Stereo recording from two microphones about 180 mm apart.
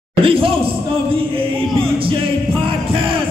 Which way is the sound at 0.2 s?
30° right (ahead or behind).